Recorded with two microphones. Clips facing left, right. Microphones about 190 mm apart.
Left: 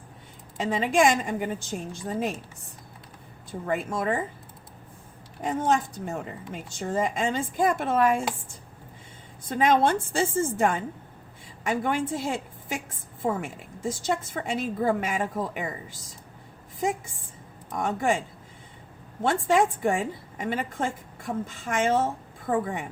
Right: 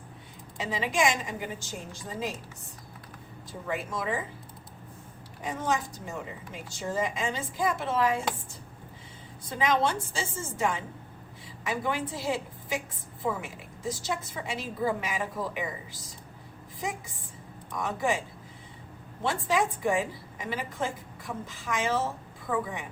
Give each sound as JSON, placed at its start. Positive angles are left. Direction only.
{"t": 0.5, "sound": "a woman's voice", "side_deg": 50}
{"t": 3.7, "sound": "a woman's voice", "side_deg": 55}
{"t": 5.4, "sound": "a woman's voice", "side_deg": 55}
{"t": 9.5, "sound": "a woman's voice", "side_deg": 55}
{"t": 17.7, "sound": "a woman's voice", "side_deg": 50}
{"t": 19.2, "sound": "a woman's voice", "side_deg": 50}